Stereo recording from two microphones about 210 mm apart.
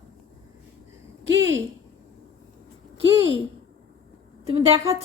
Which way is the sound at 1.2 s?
65° right (ahead or behind).